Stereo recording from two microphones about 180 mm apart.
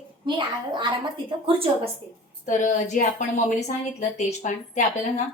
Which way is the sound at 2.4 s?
45° left (ahead or behind).